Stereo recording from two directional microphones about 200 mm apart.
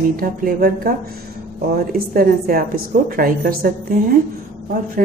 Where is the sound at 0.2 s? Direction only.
45° right (ahead or behind).